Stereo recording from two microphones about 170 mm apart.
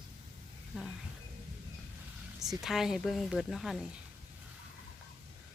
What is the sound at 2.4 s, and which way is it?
Speech, centre (ahead or behind).